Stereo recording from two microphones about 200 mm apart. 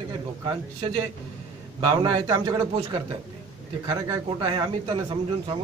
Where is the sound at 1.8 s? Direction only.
20° right (ahead or behind).